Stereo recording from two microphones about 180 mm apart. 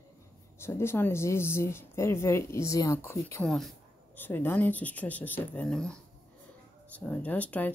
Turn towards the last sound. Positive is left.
turn(degrees=10)  # may be behind; listen again after turning